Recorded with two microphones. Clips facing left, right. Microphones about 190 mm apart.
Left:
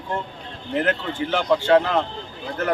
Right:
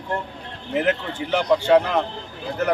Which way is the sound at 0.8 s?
Centre (ahead or behind).